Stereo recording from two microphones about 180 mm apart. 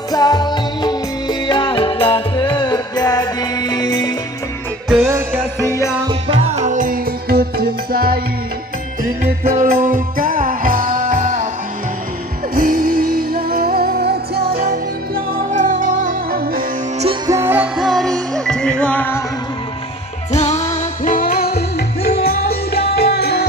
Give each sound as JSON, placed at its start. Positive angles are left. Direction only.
{"t": 0.1, "sound": "music", "side_deg": 20}
{"t": 4.8, "sound": "music", "side_deg": -10}
{"t": 6.0, "sound": "music", "side_deg": -30}
{"t": 9.4, "sound": "music", "side_deg": -50}
{"t": 12.5, "sound": "music", "side_deg": -50}
{"t": 15.5, "sound": "music", "side_deg": -45}
{"t": 17.3, "sound": "music", "side_deg": -15}
{"t": 17.7, "sound": "music", "side_deg": 0}
{"t": 20.3, "sound": "music", "side_deg": 40}